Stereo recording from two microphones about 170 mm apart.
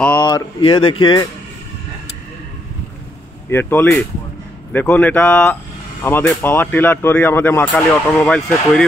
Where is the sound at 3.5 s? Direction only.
10° left (ahead or behind).